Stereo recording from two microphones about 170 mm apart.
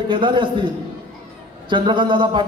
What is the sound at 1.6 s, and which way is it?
Speech, 30° right (ahead or behind).